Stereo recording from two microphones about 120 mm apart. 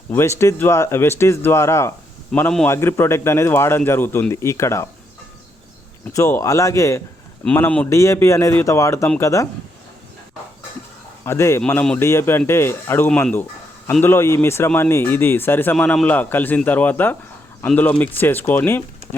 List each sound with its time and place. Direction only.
0.1 s a man's voice: 20° left (ahead or behind)
2.3 s a man's voice: 5° left (ahead or behind)
2.6 s a man's voice: 20° left (ahead or behind)
6.1 s a man's voice: 25° left (ahead or behind)
7.5 s speech: 15° left (ahead or behind)
7.9 s a man's voice: 25° left (ahead or behind)
11.3 s a man's voice: 25° left (ahead or behind)